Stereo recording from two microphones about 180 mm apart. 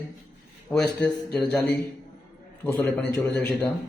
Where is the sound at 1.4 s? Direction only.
5° left (ahead or behind).